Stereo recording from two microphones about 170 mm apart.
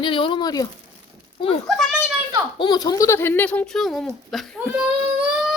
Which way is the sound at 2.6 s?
25° left (ahead or behind).